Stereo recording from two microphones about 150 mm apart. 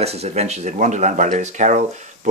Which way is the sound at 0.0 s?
45° right (ahead or behind).